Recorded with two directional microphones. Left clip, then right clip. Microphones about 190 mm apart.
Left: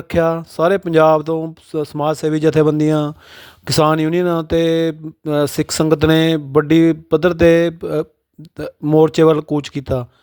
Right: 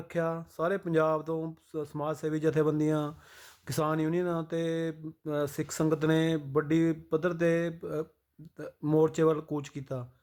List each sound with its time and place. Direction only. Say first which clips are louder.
0.1 s speech: left 16 dB; 50° left (ahead or behind)